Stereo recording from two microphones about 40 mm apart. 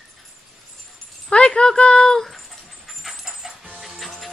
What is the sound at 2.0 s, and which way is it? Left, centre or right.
Dog, centre.